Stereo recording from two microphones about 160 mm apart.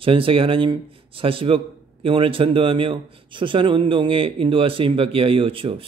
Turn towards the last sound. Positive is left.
turn(degrees=-35)  # may be behind; listen again after turning